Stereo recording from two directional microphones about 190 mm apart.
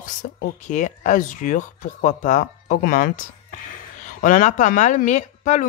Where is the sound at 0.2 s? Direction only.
45° left (ahead or behind).